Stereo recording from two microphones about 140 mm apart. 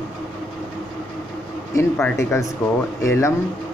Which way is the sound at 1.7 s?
20° left (ahead or behind).